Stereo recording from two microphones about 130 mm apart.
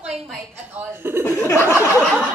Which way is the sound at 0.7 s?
15° right (ahead or behind).